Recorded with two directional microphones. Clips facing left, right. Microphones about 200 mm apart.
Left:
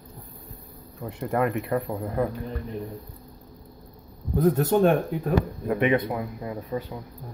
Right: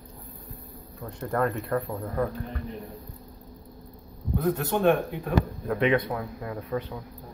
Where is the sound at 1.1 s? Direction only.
10° left (ahead or behind).